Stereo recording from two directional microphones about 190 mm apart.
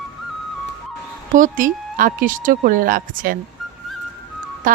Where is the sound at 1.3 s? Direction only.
45° right (ahead or behind).